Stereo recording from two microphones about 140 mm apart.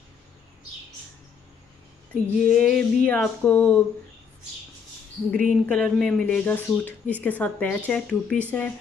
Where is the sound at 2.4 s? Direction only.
Centre (ahead or behind).